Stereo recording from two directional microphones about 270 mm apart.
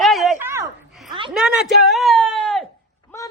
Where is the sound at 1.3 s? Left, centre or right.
Centre.